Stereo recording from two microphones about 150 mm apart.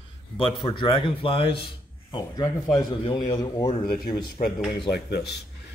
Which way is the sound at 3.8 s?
80° left.